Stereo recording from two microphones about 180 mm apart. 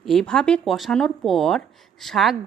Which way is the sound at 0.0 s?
Centre (ahead or behind).